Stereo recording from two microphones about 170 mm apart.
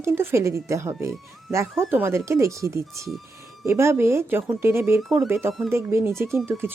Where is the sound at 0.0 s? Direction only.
15° right (ahead or behind).